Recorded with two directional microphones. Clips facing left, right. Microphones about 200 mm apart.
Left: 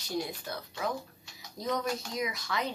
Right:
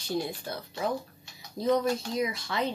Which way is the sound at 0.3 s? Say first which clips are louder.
Right 3 dB; 30° right (ahead or behind).